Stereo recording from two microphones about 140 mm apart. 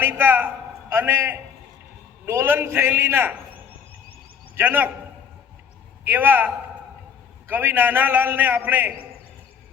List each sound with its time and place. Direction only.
0.0 s a man's voice: 15° right (ahead or behind)
4.5 s a man's voice: 15° right (ahead or behind)
6.1 s a man's voice: 15° right (ahead or behind)
7.5 s a man's voice: 15° right (ahead or behind)